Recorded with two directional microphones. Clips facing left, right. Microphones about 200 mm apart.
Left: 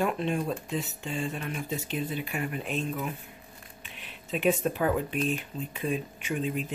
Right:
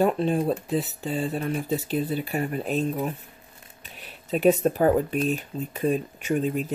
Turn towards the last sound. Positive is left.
turn(degrees=-45)  # may be behind; listen again after turning